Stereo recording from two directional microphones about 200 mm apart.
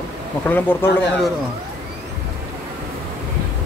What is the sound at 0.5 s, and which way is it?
Speech, 10° left (ahead or behind).